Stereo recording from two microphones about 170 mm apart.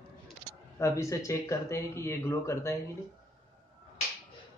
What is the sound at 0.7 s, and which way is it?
Speech, 15° left (ahead or behind).